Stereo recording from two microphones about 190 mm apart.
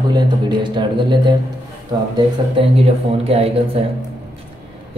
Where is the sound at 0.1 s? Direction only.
25° right (ahead or behind).